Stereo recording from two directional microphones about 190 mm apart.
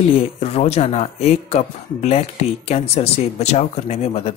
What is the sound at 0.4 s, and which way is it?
Speech, 35° left (ahead or behind).